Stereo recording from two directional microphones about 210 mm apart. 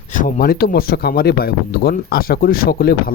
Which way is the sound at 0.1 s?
40° left (ahead or behind).